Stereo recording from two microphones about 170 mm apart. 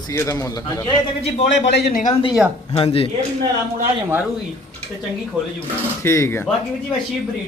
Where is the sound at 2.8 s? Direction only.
35° left (ahead or behind).